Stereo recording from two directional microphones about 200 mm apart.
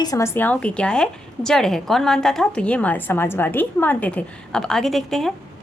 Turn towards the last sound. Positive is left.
turn(degrees=0)  # may be behind; listen again after turning